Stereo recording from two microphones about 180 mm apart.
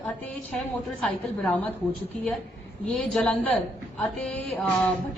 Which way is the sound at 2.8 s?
5° left (ahead or behind).